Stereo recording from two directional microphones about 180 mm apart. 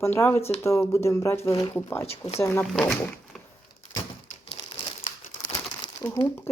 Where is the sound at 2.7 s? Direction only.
Centre (ahead or behind).